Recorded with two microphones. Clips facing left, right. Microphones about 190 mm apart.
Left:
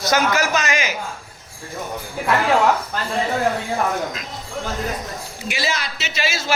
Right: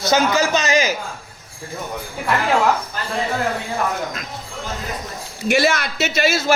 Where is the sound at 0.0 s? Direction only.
30° right (ahead or behind).